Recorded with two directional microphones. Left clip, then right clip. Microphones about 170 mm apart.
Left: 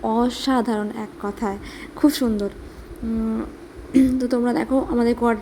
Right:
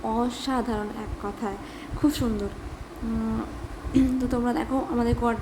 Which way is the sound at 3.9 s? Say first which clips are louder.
Left 6 dB; 25° left (ahead or behind).